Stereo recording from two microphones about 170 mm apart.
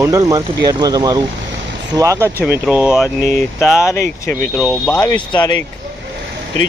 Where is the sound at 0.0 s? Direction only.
20° right (ahead or behind).